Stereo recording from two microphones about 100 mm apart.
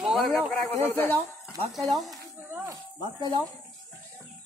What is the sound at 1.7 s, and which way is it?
Speech, centre (ahead or behind).